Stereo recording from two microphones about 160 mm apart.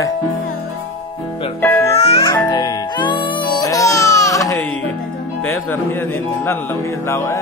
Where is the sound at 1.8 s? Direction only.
40° left (ahead or behind).